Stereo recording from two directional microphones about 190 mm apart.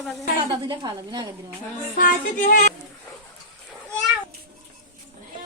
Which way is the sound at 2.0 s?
45° left (ahead or behind).